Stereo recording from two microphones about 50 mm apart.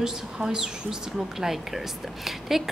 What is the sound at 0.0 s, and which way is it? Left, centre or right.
Speech, centre.